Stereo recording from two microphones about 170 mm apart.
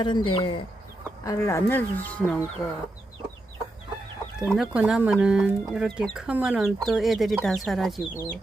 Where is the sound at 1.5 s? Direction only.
15° left (ahead or behind).